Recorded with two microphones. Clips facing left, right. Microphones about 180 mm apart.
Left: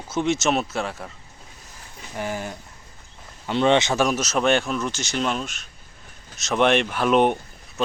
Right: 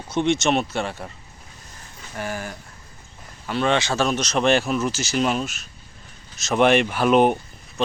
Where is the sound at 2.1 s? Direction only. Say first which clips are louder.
Left 1 dB; 20° left (ahead or behind).